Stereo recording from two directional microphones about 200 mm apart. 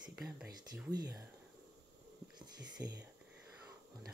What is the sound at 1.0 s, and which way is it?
Speech, 20° right (ahead or behind).